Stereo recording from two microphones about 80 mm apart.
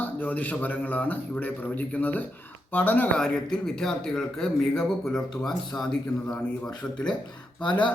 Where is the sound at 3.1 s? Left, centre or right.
Centre.